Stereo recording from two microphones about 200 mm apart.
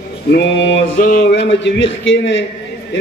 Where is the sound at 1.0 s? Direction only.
40° left (ahead or behind).